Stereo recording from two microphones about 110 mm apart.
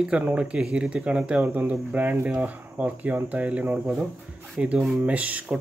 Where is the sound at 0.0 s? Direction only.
10° right (ahead or behind).